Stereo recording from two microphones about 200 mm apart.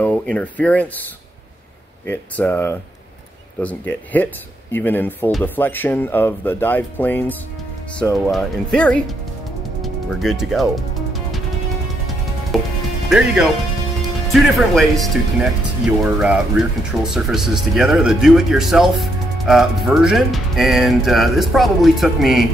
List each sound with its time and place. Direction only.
0.0 s speech: 5° left (ahead or behind)
2.0 s speech: 10° left (ahead or behind)
12.5 s speech: centre (ahead or behind)